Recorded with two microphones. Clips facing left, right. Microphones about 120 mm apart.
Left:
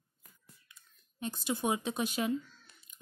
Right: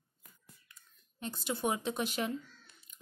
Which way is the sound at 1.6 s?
15° left (ahead or behind).